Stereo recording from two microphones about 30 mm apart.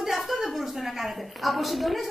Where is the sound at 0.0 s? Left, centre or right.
Centre.